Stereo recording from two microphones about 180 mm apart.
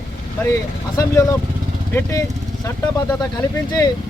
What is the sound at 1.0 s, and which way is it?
Speech, 20° left (ahead or behind).